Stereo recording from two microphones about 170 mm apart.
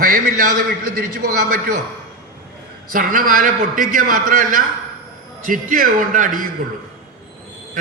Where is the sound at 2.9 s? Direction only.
55° right (ahead or behind).